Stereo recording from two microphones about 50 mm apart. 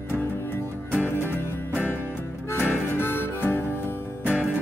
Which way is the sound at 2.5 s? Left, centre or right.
Left.